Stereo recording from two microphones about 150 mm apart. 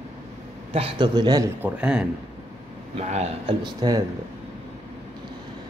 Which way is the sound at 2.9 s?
45° right (ahead or behind).